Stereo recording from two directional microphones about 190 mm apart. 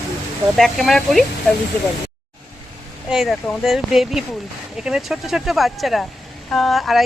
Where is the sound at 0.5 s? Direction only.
Centre (ahead or behind).